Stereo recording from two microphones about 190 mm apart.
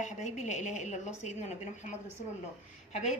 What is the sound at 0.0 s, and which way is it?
A woman's voice, 40° left (ahead or behind).